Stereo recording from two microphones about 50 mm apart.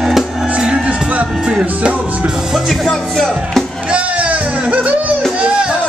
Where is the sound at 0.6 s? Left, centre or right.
Right.